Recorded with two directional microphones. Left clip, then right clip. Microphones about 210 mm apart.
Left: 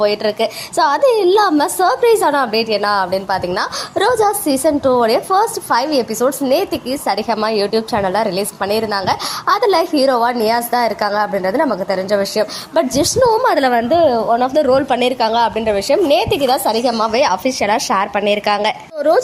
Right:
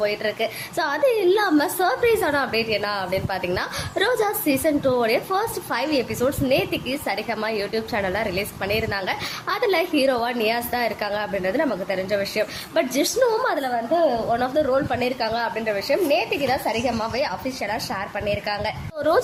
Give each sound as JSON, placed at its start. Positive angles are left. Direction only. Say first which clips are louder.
{"t": 0.0, "sound": "a woman's voice", "louder": "left 8 dB", "side_deg": 20}
{"t": 13.4, "sound": "a woman's voice", "louder": "left 10 dB", "side_deg": 30}
{"t": 14.3, "sound": "a woman's voice", "louder": "left 8 dB", "side_deg": 25}